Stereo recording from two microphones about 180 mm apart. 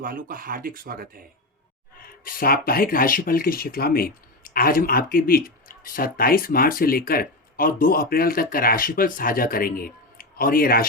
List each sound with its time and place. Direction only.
0.0 s speech: 50° right (ahead or behind)
2.0 s speech: 55° left (ahead or behind)